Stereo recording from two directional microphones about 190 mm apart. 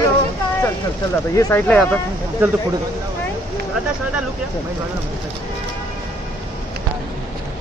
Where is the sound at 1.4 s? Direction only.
15° left (ahead or behind).